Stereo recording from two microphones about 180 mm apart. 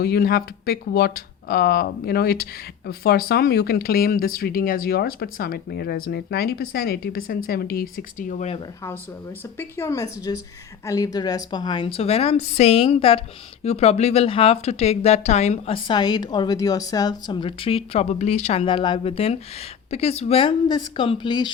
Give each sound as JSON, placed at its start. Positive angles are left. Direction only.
{"t": 0.0, "sound": "speech", "side_deg": 60}
{"t": 9.6, "sound": "a woman's voice", "side_deg": 15}